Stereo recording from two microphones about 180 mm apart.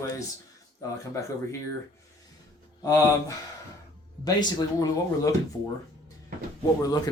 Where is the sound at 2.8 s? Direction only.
20° left (ahead or behind).